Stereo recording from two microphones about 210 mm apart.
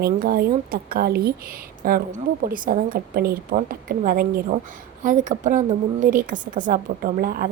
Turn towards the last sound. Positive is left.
turn(degrees=-45)  # may be behind; listen again after turning